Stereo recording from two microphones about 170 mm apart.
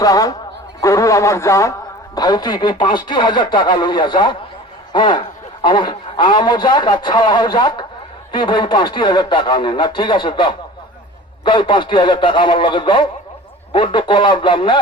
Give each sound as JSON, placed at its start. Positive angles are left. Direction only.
{"t": 0.0, "sound": "a man's voice", "side_deg": 20}